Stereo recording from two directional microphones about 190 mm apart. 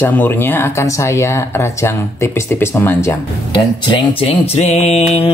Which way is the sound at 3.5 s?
25° left (ahead or behind).